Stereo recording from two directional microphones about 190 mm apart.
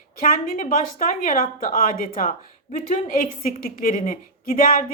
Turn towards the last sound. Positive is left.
turn(degrees=45)  # may be behind; listen again after turning